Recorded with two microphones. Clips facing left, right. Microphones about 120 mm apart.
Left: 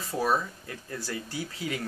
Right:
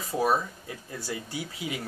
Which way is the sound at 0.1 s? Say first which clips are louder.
Right 2 dB; 10° right (ahead or behind).